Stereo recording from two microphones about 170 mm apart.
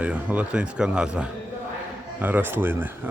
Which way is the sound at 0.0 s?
5° right (ahead or behind).